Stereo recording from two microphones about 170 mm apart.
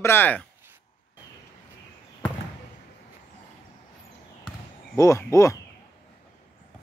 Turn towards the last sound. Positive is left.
turn(degrees=20)  # may be behind; listen again after turning